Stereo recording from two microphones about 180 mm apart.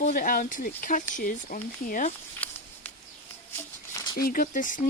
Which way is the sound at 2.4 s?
5° left (ahead or behind).